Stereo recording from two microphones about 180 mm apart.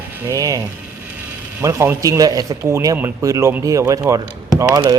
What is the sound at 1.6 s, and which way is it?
Speech, 15° right (ahead or behind).